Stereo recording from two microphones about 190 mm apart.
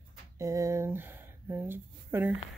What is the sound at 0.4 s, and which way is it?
Speech, 15° right (ahead or behind).